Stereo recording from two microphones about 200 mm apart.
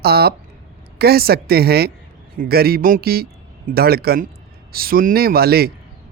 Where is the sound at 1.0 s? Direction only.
50° right (ahead or behind).